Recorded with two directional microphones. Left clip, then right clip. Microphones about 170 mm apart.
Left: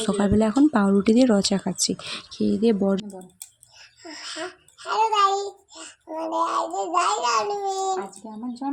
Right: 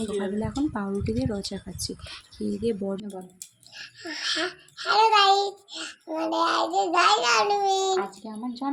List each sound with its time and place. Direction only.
0.0 s a woman's voice: 45° left (ahead or behind)
4.8 s a child's voice: 15° right (ahead or behind)
8.2 s speech: 15° left (ahead or behind)